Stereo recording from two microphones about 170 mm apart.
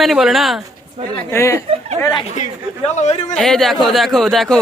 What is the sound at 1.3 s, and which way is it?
Speech, 15° left (ahead or behind).